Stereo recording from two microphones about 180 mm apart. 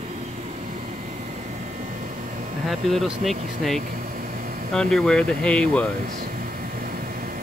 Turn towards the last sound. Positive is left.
turn(degrees=5)  # may be behind; listen again after turning